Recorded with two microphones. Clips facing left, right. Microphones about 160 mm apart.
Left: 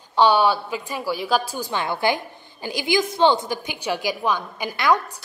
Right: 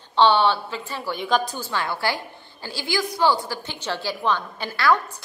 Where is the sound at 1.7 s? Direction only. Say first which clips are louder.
Left 6 dB; 20° left (ahead or behind).